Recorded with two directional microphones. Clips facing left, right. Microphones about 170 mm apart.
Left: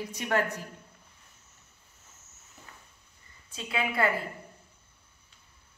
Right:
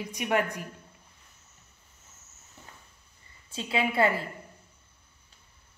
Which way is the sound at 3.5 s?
30° right (ahead or behind).